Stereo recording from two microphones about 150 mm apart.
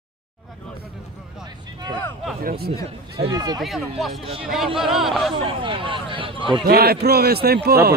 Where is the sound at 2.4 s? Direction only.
90° right.